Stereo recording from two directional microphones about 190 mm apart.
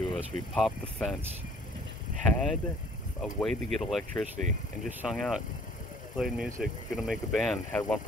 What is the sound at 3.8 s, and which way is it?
Speech, centre (ahead or behind).